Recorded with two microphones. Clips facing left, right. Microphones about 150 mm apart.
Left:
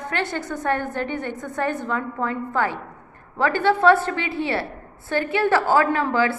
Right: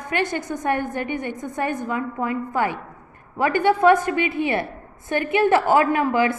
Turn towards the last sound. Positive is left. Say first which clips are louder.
# right 1 dB
turn(degrees=-15)  # may be behind; listen again after turning